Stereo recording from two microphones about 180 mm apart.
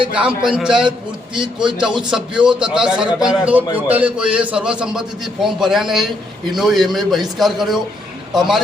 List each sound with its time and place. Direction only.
0.1 s a man's voice: 5° right (ahead or behind)
1.4 s a man's voice: 25° right (ahead or behind)
2.0 s a man's voice: 5° right (ahead or behind)